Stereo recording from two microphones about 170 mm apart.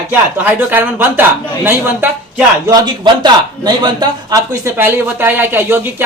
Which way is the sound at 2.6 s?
25° right (ahead or behind).